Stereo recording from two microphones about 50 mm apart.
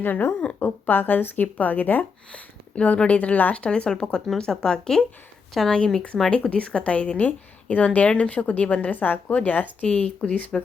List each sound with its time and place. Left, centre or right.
0.0 s speech: left
2.3 s speech: left
3.6 s a woman's voice: centre